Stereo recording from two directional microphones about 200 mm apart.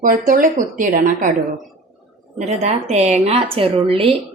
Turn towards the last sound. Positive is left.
turn(degrees=-30)  # may be behind; listen again after turning